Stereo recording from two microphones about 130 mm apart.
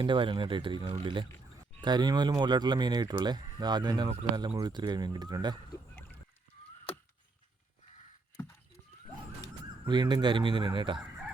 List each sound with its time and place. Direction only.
0.0 s speech: 40° right (ahead or behind)
9.8 s speech: 35° right (ahead or behind)